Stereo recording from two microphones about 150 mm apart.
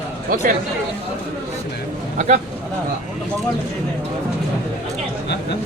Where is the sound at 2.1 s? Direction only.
55° right (ahead or behind).